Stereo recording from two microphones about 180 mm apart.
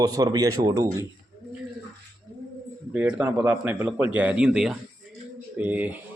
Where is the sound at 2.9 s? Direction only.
10° right (ahead or behind).